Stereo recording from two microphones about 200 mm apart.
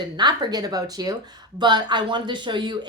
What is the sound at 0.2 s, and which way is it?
Speech, 20° right (ahead or behind).